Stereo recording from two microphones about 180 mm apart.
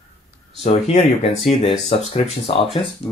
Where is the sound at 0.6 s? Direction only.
35° left (ahead or behind).